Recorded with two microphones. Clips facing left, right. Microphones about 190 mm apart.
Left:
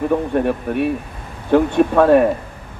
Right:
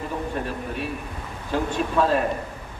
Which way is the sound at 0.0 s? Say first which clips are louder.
Left 11 dB; 60° left (ahead or behind).